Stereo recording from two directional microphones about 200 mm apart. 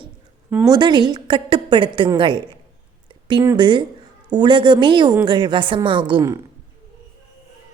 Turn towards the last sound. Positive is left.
turn(degrees=-20)  # may be behind; listen again after turning